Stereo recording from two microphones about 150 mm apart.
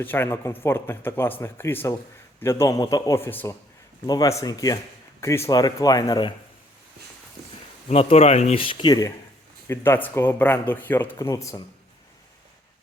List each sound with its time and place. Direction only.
0.0 s a man's voice: 15° left (ahead or behind)
4.0 s a man's voice: 25° left (ahead or behind)
7.9 s speech: 40° left (ahead or behind); by 11.6 s 20° left (ahead or behind)